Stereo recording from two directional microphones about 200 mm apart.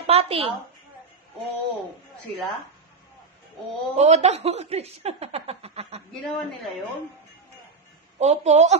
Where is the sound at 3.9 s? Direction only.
35° right (ahead or behind).